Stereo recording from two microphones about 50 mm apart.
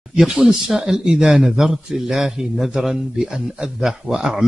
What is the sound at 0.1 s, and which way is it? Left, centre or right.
Speech, centre.